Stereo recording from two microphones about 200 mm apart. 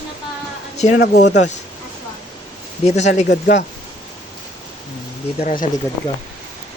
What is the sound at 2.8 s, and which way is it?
Speech, 35° left (ahead or behind).